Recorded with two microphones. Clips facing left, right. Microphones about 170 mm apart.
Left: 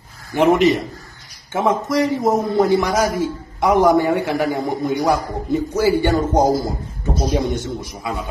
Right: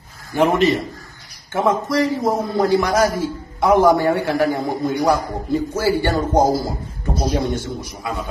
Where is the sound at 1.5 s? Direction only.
20° left (ahead or behind).